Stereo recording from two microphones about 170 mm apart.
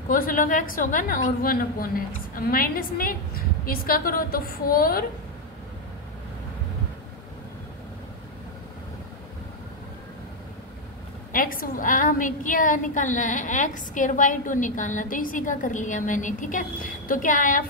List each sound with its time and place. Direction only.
0.1 s a woman's voice: 55° left (ahead or behind)
11.3 s a woman's voice: 55° left (ahead or behind)